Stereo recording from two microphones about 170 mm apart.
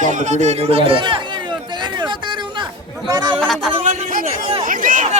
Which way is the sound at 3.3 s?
Centre (ahead or behind).